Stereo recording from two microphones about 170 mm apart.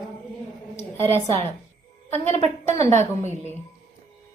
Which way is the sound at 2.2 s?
40° right (ahead or behind).